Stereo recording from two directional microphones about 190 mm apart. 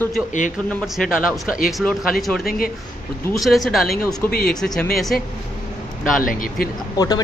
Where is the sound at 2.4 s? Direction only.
50° left (ahead or behind).